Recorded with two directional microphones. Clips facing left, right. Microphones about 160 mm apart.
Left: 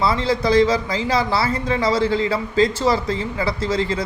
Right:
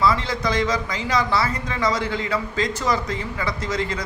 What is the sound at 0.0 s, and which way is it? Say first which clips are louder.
A man's voice: left 2 dB; 30° left (ahead or behind).